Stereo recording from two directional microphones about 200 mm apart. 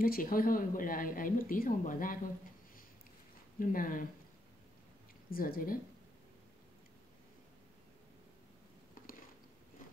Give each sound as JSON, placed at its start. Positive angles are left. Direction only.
{"t": 0.0, "sound": "speech", "side_deg": 45}
{"t": 5.3, "sound": "speech", "side_deg": 45}
{"t": 9.0, "sound": "a sound", "side_deg": 45}